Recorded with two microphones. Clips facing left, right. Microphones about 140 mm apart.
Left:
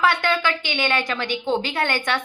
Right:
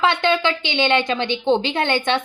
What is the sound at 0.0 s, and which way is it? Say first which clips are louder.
A woman's voice: right 2 dB; 25° right (ahead or behind).